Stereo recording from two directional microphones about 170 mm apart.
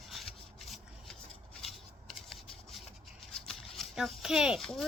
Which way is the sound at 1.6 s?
Centre (ahead or behind).